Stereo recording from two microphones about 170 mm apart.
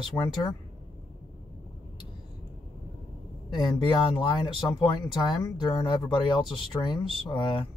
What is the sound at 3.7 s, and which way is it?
Speech, 30° left (ahead or behind).